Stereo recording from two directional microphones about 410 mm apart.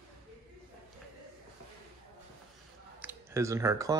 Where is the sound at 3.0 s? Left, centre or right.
Centre.